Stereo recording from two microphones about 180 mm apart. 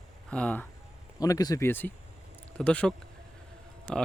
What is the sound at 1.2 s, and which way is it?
Speech, 20° left (ahead or behind).